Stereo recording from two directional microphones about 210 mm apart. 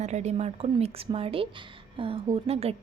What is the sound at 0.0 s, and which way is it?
A woman's voice, 35° right (ahead or behind).